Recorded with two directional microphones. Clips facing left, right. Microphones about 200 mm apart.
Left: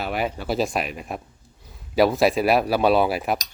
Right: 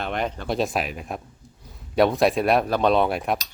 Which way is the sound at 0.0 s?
5° left (ahead or behind).